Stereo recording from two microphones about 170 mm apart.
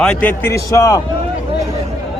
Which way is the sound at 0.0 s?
5° left (ahead or behind).